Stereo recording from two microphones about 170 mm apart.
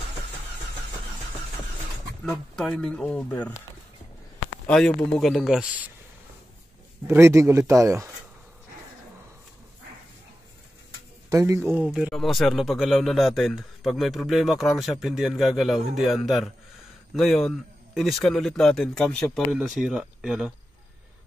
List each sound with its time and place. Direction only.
2.2 s a man's voice: 5° left (ahead or behind)
4.6 s a man's voice: 5° left (ahead or behind)
7.1 s speech: 15° right (ahead or behind)
11.2 s a man's voice: 20° right (ahead or behind)